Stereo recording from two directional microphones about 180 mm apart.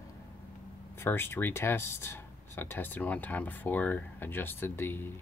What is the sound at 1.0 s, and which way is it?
Speech, 15° left (ahead or behind).